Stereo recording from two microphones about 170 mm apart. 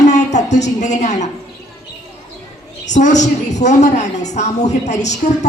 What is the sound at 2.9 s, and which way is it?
A woman's voice, 45° left (ahead or behind).